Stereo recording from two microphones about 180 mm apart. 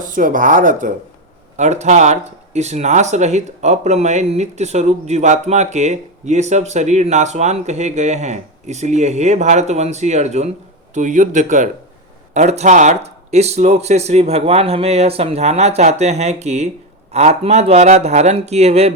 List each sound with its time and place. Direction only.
0.0 s speech: 45° right (ahead or behind)